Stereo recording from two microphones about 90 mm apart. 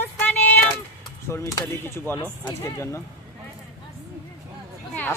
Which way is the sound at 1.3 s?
30° left (ahead or behind).